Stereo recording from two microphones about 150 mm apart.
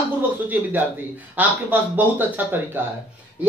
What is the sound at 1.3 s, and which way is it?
Speech, 10° right (ahead or behind).